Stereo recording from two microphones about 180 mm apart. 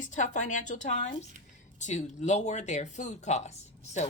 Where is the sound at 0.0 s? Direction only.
45° left (ahead or behind).